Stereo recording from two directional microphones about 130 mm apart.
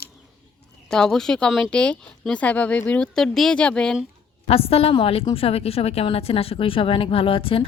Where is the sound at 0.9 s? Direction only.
5° left (ahead or behind).